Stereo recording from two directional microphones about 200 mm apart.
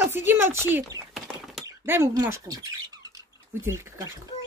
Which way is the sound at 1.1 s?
Centre (ahead or behind).